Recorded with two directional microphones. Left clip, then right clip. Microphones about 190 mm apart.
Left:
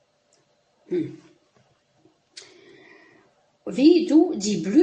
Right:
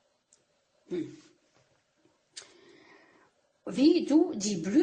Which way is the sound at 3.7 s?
15° right (ahead or behind).